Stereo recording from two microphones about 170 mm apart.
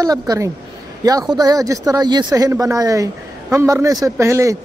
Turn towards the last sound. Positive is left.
turn(degrees=-15)  # may be behind; listen again after turning